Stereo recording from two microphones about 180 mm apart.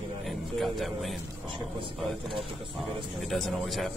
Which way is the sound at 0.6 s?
Centre (ahead or behind).